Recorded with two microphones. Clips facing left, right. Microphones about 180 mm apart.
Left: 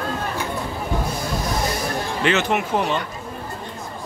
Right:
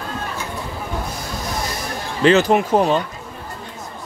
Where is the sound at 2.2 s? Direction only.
35° right (ahead or behind).